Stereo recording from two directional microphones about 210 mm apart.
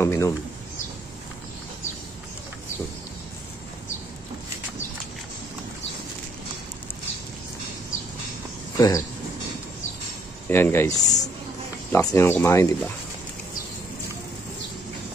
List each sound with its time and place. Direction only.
0.0 s speech: 15° left (ahead or behind)
8.7 s speech: 15° left (ahead or behind)
10.5 s speech: 10° left (ahead or behind)